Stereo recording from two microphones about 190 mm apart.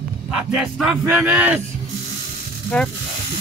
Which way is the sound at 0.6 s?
Centre (ahead or behind).